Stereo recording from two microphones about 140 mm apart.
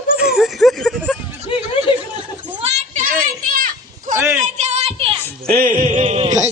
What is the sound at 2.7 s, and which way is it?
Children playing, 70° right (ahead or behind).